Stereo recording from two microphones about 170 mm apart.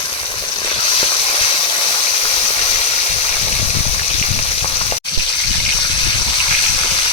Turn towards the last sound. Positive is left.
turn(degrees=30)  # may be behind; listen again after turning